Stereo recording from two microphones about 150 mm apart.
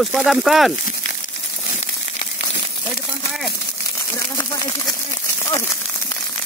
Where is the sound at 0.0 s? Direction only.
Centre (ahead or behind).